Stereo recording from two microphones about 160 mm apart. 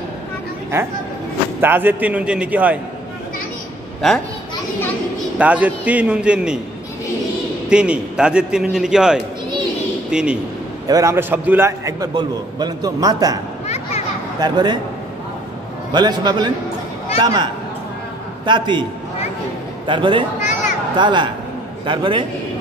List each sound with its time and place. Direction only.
1.6 s a man's voice: 15° right (ahead or behind)
5.4 s a man's voice: 10° right (ahead or behind)
7.7 s a man's voice: 5° right (ahead or behind)
10.9 s a man's voice: 20° right (ahead or behind)
14.4 s a man's voice: 30° right (ahead or behind)
15.9 s a man's voice: 25° right (ahead or behind)
19.9 s speech: 30° right (ahead or behind)
20.3 s a sound: 50° left (ahead or behind)
20.9 s a man's voice: 30° right (ahead or behind)